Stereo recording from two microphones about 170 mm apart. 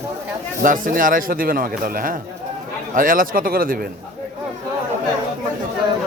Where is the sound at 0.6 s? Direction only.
50° right (ahead or behind).